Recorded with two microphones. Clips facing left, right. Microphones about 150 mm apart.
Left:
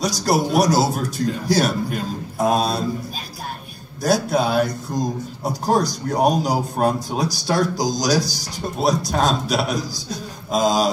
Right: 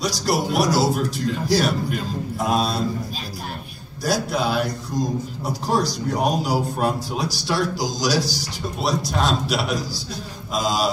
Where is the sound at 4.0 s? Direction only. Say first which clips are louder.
Left 4 dB; 45° left (ahead or behind).